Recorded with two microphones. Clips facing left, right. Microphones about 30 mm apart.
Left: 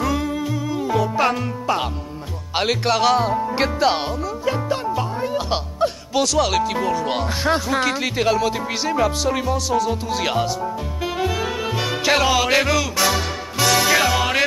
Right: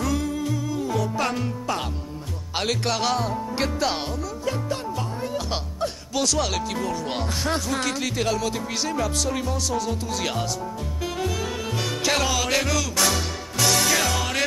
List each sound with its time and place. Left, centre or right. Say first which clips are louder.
0.0 s music: left 3 dB; left
3.2 s speech: left 6 dB; left
4.5 s music: left 6 dB; left
6.2 s speech: left 6 dB; centre
6.7 s speech: left 6 dB; centre
7.0 s music: left 6 dB; centre
7.4 s speech: left 7 dB; centre
11.1 s music: left 5 dB; left